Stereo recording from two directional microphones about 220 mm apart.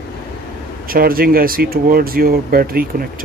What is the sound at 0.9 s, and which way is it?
Speech, 40° right (ahead or behind).